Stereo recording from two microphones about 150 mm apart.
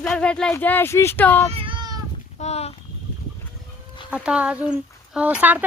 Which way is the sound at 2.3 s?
45° left (ahead or behind).